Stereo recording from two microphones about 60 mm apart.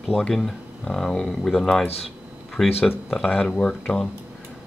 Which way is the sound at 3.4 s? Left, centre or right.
Left.